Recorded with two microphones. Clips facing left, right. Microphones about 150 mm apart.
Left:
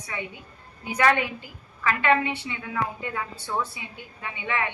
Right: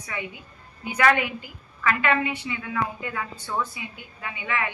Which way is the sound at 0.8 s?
30° left (ahead or behind).